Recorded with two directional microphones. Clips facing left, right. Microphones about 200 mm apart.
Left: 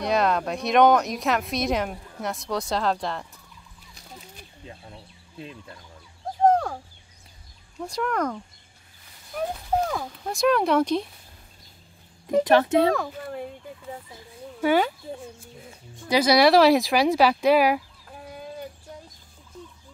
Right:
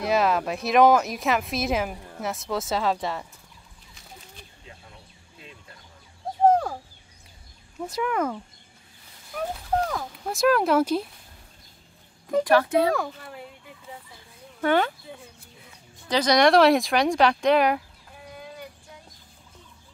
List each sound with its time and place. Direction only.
0.0 s speech: 5° right (ahead or behind)
6.4 s owl: 5° right (ahead or behind)
7.8 s speech: 5° right (ahead or behind)
12.4 s speech: 25° left (ahead or behind)
14.6 s speech: 10° left (ahead or behind)
16.1 s speech: 10° left (ahead or behind)